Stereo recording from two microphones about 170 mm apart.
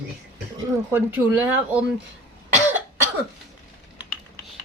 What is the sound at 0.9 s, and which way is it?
Speech, 10° right (ahead or behind).